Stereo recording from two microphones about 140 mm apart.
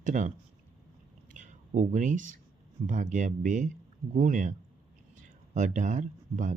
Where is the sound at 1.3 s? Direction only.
60° right (ahead or behind).